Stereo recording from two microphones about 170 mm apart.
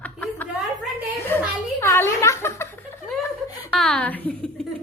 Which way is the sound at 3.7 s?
Centre (ahead or behind).